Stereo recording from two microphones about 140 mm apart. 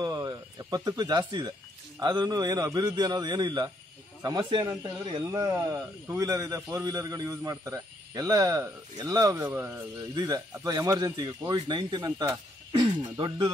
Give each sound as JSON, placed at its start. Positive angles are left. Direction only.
{"t": 0.0, "sound": "a sound", "side_deg": -25}
{"t": 2.0, "sound": "speech", "side_deg": -30}
{"t": 10.1, "sound": "speech", "side_deg": -25}